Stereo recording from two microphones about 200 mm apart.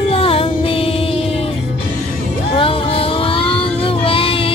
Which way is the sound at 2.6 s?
25° left (ahead or behind).